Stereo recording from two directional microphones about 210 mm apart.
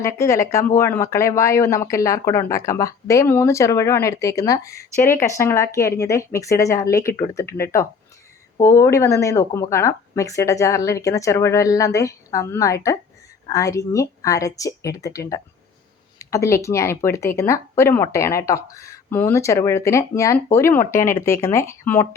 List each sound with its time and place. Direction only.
0.0 s speech: 15° left (ahead or behind)